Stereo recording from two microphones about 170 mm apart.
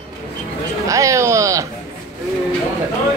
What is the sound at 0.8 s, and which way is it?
Music, 20° right (ahead or behind).